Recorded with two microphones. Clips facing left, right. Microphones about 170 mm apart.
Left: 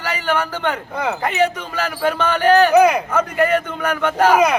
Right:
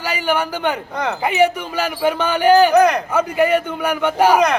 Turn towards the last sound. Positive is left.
turn(degrees=-10)  # may be behind; listen again after turning